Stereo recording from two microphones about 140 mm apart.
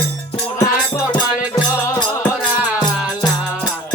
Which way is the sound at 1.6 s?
25° left (ahead or behind).